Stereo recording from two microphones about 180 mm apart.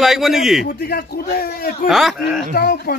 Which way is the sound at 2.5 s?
60° left (ahead or behind).